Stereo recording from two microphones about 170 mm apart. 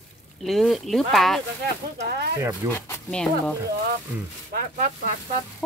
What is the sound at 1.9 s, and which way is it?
Speech, 75° right (ahead or behind).